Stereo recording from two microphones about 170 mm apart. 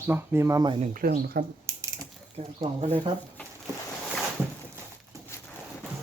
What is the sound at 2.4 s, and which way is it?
Speech, 35° right (ahead or behind).